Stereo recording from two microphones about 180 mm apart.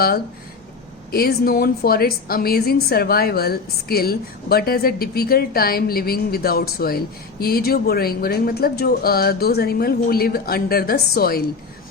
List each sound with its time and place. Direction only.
1.1 s a woman's voice: 55° left (ahead or behind)